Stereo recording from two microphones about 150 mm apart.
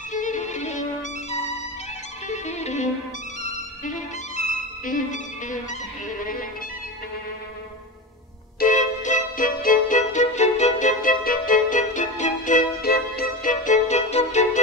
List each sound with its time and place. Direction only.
0.1 s music: 55° left (ahead or behind)
2.2 s music: 50° left (ahead or behind)
4.8 s music: 60° left (ahead or behind)
8.5 s music: 60° left (ahead or behind)